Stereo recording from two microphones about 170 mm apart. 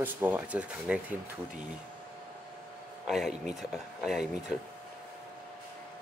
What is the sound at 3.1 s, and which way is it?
Speech, centre (ahead or behind).